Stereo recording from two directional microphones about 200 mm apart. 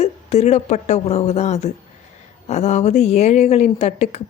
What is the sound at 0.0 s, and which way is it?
A woman's voice, 35° left (ahead or behind).